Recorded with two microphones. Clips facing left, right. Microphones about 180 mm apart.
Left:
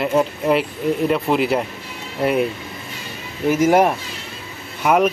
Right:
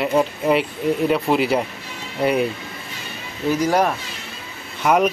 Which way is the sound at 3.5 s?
20° left (ahead or behind).